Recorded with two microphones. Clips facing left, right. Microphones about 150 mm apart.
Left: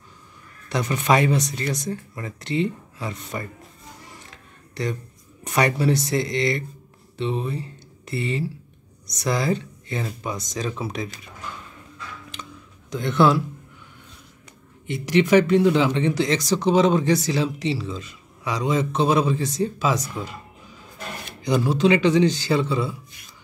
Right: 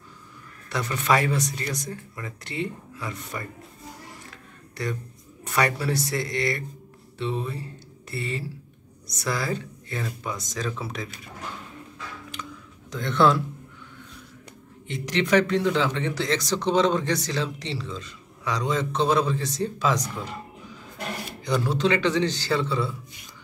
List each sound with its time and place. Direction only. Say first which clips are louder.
0.7 s speech: left 3 dB; 20° left (ahead or behind)
4.3 s a sound: right 1 dB; 20° left (ahead or behind)
5.4 s speech: left 4 dB; 20° left (ahead or behind)
12.9 s speech: left 2 dB; 10° left (ahead or behind)
14.9 s speech: left 5 dB; 10° left (ahead or behind)
21.5 s speech: left 5 dB; 15° left (ahead or behind)